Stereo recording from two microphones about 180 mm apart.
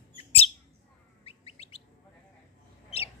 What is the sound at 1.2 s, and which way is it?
Chirp, 35° left (ahead or behind).